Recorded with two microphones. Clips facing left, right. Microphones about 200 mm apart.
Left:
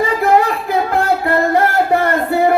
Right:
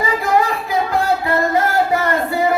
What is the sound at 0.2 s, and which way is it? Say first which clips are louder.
Music: left 4 dB; 60° left (ahead or behind).